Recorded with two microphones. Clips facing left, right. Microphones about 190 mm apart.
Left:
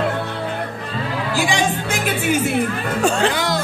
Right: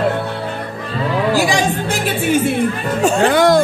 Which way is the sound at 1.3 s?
40° right (ahead or behind).